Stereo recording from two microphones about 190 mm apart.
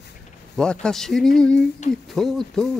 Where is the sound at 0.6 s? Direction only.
5° left (ahead or behind).